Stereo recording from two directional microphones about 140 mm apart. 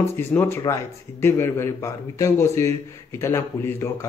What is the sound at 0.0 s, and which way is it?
Speech, 20° left (ahead or behind).